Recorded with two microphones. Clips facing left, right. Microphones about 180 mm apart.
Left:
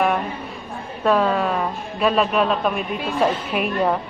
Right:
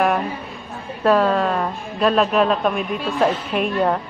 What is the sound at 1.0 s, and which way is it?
A woman's voice, centre (ahead or behind).